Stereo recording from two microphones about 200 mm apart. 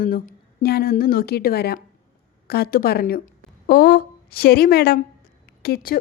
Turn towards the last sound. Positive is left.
turn(degrees=50)  # may be behind; listen again after turning